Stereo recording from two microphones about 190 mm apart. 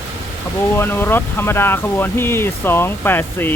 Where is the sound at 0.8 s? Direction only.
10° left (ahead or behind).